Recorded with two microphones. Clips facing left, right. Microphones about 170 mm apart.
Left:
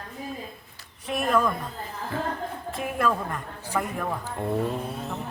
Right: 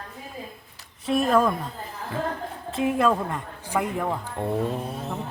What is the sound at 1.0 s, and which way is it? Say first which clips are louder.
Speech: right 4 dB; 30° right (ahead or behind).